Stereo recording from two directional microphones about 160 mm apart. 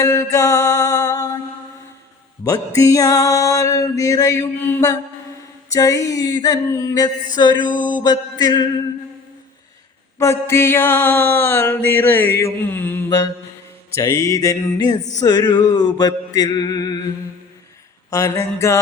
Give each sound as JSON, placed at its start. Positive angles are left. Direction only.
{"t": 0.0, "sound": "music", "side_deg": 20}
{"t": 2.4, "sound": "music", "side_deg": 20}
{"t": 10.2, "sound": "mantra", "side_deg": 15}
{"t": 13.9, "sound": "music", "side_deg": 20}
{"t": 18.1, "sound": "music", "side_deg": 20}